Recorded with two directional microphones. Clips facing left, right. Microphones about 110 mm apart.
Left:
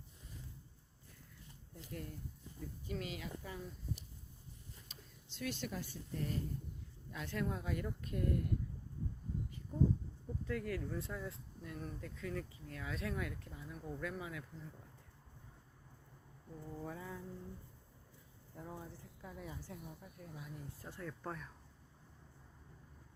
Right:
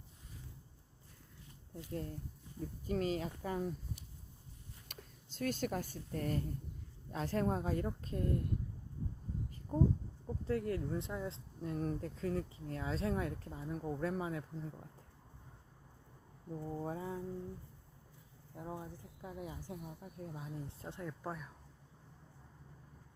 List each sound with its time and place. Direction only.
1.7 s speech: 30° right (ahead or behind)
2.6 s speech: 40° right (ahead or behind)
4.9 s a sound: 65° right (ahead or behind)
5.3 s a woman's voice: 45° right (ahead or behind)
7.1 s speech: 35° right (ahead or behind)
10.4 s speech: 30° right (ahead or behind)
16.5 s speech: 30° right (ahead or behind)
18.5 s speech: 20° right (ahead or behind)
20.0 s speech: 30° right (ahead or behind); by 21.5 s 10° right (ahead or behind)